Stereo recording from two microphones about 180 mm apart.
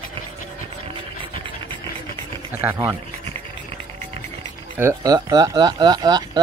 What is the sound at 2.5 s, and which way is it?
Speech, 10° right (ahead or behind).